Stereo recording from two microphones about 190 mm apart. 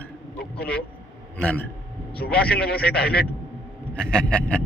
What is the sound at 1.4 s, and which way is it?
Speech, 10° left (ahead or behind).